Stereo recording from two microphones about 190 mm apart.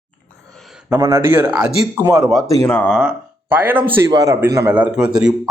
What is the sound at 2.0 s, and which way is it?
Speech, 20° right (ahead or behind).